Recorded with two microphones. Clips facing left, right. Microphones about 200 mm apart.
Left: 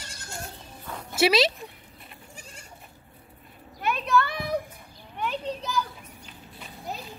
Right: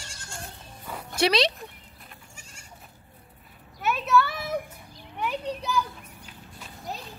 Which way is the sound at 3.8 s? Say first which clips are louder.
Right 1 dB; 5° right (ahead or behind).